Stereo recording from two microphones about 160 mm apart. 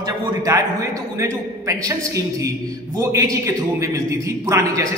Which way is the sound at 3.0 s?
20° right (ahead or behind).